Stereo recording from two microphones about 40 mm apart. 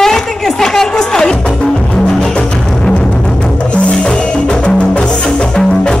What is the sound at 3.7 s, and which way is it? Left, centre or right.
Music, left.